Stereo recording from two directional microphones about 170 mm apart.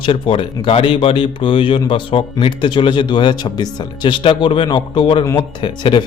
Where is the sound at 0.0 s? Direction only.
30° left (ahead or behind).